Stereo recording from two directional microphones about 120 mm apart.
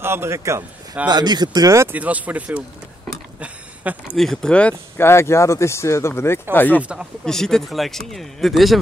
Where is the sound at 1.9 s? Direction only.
10° right (ahead or behind).